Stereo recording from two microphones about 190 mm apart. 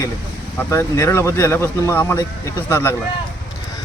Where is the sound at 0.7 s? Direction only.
15° left (ahead or behind).